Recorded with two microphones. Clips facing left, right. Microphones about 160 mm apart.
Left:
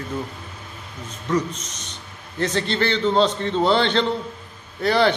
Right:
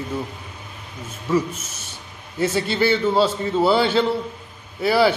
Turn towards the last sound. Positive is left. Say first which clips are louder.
# right 1 dB
turn(degrees=-5)  # may be behind; listen again after turning